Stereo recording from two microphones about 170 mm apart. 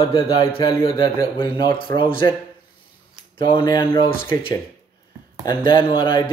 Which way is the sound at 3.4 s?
25° left (ahead or behind).